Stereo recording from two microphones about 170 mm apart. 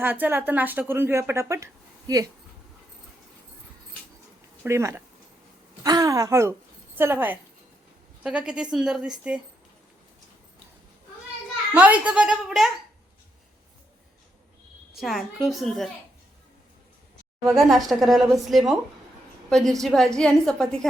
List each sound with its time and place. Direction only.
0.0 s speech: 10° right (ahead or behind)
4.6 s a woman's voice: 15° right (ahead or behind)
11.7 s speech: 10° right (ahead or behind)
14.9 s a woman's voice: centre (ahead or behind)
17.4 s a woman's voice: centre (ahead or behind)